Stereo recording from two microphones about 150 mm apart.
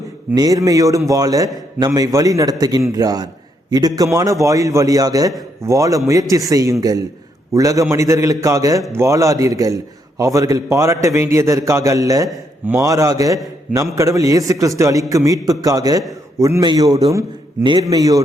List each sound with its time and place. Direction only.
0.3 s a man's voice: 25° right (ahead or behind)